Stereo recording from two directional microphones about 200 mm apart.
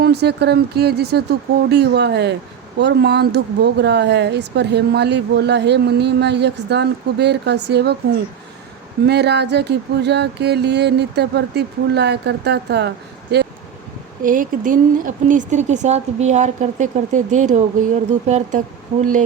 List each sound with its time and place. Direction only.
0.0 s speech: 55° right (ahead or behind)
9.0 s speech: 55° right (ahead or behind)
14.3 s speech: 40° right (ahead or behind)